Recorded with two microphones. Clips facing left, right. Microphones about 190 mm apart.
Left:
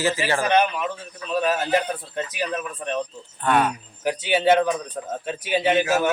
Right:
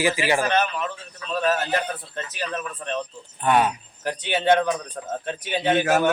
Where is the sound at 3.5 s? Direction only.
20° right (ahead or behind).